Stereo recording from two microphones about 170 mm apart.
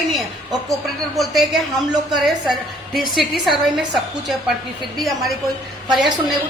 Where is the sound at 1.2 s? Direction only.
Centre (ahead or behind).